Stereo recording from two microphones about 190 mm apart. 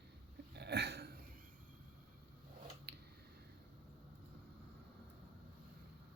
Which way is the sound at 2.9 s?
60° right (ahead or behind).